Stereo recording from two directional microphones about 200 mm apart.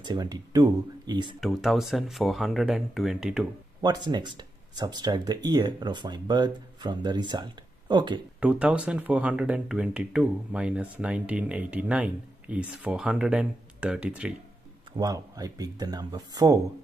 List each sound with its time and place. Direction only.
0.0 s speech: 20° right (ahead or behind)
1.4 s speech: centre (ahead or behind)
3.8 s speech: 20° right (ahead or behind)
8.4 s speech: 5° right (ahead or behind)
15.0 s speech: 20° right (ahead or behind)